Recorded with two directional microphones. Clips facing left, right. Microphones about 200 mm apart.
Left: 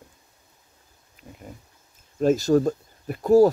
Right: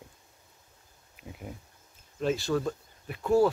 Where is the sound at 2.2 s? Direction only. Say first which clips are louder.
Left 9 dB; 40° left (ahead or behind).